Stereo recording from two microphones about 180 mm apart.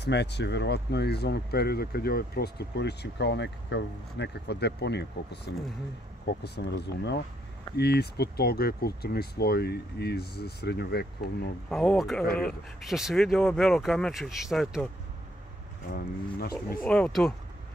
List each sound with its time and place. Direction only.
0.0 s speech: 70° left (ahead or behind)
11.7 s speech: 5° left (ahead or behind)
15.9 s speech: 60° left (ahead or behind)
16.8 s speech: 5° left (ahead or behind)